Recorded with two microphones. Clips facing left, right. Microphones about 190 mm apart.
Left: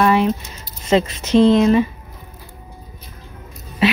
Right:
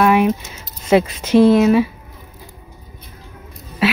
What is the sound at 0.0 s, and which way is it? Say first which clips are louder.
Keys jangling: right 2 dB; 10° right (ahead or behind).